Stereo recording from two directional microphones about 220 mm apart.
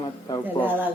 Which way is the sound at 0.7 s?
10° right (ahead or behind).